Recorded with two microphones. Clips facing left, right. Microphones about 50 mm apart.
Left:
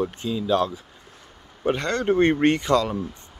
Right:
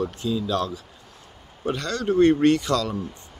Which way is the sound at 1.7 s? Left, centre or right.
Left.